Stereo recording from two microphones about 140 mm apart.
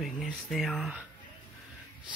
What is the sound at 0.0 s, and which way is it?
Speech, centre (ahead or behind).